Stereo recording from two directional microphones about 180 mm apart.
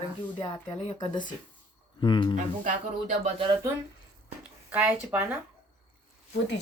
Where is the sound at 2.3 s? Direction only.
40° right (ahead or behind).